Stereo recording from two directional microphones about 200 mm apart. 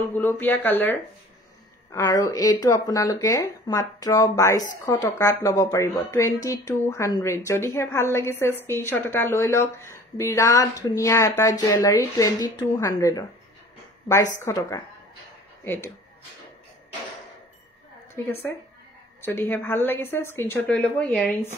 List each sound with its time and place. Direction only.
0.2 s a woman's voice: 10° left (ahead or behind)
14.4 s a woman's voice: 15° left (ahead or behind)
18.1 s a woman's voice: 10° left (ahead or behind)